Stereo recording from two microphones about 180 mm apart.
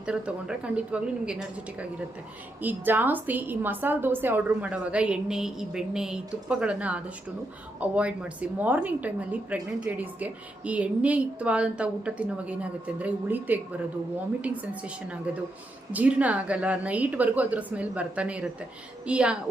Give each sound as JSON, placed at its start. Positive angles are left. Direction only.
{"t": 0.0, "sound": "speech", "side_deg": -5}
{"t": 2.6, "sound": "a woman's voice", "side_deg": -10}